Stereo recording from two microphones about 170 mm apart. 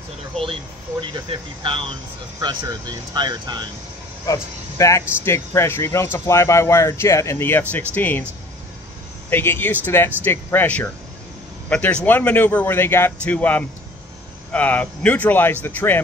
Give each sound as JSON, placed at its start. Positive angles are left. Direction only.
{"t": 0.3, "sound": "speech", "side_deg": 5}
{"t": 1.0, "sound": "speech", "side_deg": -30}
{"t": 4.3, "sound": "speech", "side_deg": 20}
{"t": 9.3, "sound": "speech", "side_deg": 15}